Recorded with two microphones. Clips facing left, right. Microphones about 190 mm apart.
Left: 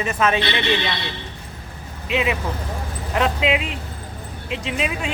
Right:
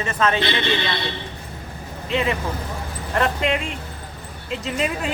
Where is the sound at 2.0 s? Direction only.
10° left (ahead or behind).